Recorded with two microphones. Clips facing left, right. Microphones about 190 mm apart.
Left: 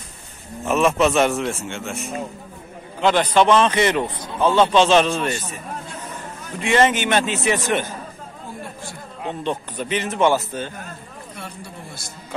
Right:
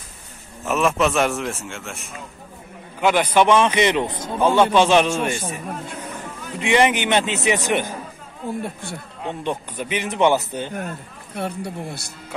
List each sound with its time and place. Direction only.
0.7 s a man's voice: centre (ahead or behind)
6.6 s a man's voice: 15° right (ahead or behind)
9.4 s a man's voice: 10° right (ahead or behind)
11.3 s speech: 65° right (ahead or behind)